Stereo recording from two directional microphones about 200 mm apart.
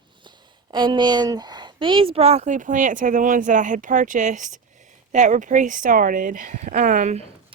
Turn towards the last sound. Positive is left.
turn(degrees=-35)  # may be behind; listen again after turning